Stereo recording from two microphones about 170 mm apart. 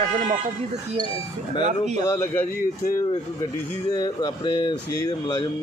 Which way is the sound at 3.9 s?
20° left (ahead or behind).